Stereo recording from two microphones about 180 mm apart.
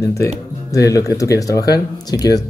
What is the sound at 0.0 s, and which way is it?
Speech, 15° left (ahead or behind).